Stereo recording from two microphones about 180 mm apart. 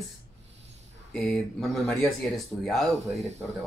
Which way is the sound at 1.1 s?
5° left (ahead or behind).